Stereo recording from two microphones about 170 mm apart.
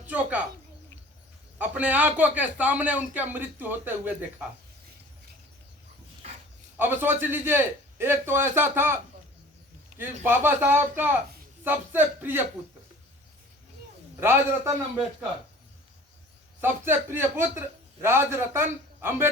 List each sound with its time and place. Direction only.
0.1 s a sound: 10° right (ahead or behind)
1.5 s a man's voice: 10° right (ahead or behind)
6.7 s a man's voice: 10° right (ahead or behind)
9.9 s a sound: 45° right (ahead or behind)
10.2 s a man's voice: 10° right (ahead or behind)
14.2 s a man's voice: 15° right (ahead or behind)
16.6 s a man's voice: 15° right (ahead or behind)